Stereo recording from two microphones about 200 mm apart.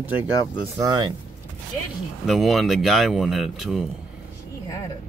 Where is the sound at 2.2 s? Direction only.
Centre (ahead or behind).